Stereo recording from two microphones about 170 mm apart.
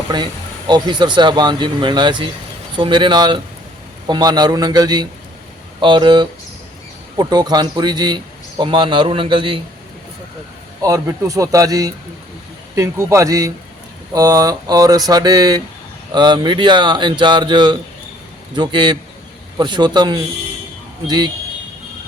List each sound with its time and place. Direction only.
0.7 s speech: 25° right (ahead or behind)
10.8 s speech: 20° right (ahead or behind)